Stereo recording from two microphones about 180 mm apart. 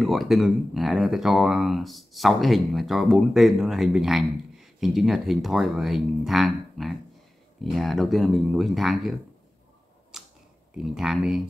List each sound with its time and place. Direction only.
0.0 s speech: centre (ahead or behind)
10.1 s camera: 5° right (ahead or behind)
10.8 s speech: centre (ahead or behind)